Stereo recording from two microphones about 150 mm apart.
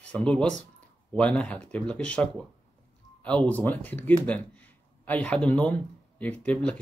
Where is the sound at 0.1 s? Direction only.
10° left (ahead or behind).